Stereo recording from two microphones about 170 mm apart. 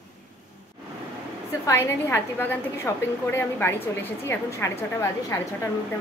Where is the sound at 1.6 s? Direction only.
15° left (ahead or behind).